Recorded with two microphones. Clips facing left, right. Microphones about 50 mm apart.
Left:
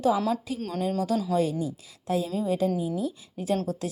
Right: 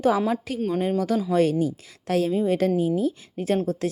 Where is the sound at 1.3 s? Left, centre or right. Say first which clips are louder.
Right 5 dB; right.